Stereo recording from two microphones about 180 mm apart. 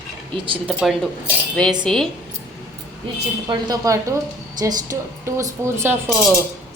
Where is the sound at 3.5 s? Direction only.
20° right (ahead or behind).